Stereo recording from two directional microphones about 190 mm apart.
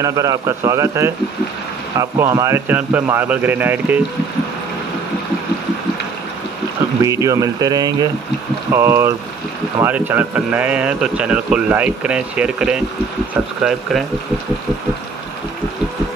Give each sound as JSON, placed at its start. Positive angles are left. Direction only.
{"t": 0.0, "sound": "a man's voice", "side_deg": -15}
{"t": 7.0, "sound": "a man's voice", "side_deg": -15}